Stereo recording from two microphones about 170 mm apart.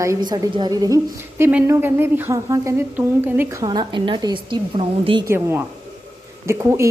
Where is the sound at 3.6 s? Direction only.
25° right (ahead or behind).